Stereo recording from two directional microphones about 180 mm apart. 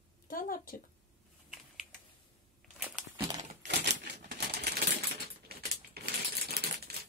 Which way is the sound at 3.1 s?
20° right (ahead or behind).